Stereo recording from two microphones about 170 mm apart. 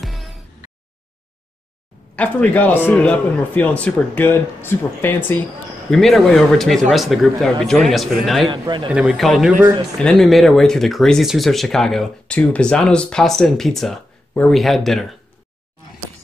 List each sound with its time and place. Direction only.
0.0 s music: centre (ahead or behind)
2.1 s a man's voice: 10° left (ahead or behind)
5.9 s speech: centre (ahead or behind)
8.5 s a man's voice: 25° right (ahead or behind)
8.9 s speech: centre (ahead or behind)